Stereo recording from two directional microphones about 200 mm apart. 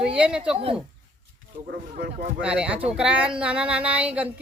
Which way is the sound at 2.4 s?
5° right (ahead or behind).